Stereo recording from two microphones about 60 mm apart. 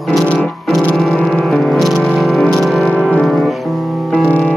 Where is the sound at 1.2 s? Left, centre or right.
Centre.